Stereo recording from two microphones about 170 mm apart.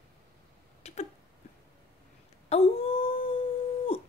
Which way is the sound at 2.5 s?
35° left (ahead or behind).